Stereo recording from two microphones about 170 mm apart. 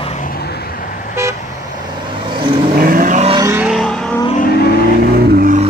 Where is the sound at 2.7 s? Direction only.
55° right (ahead or behind).